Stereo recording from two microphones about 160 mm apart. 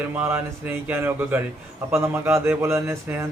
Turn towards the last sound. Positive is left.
turn(degrees=-15)  # may be behind; listen again after turning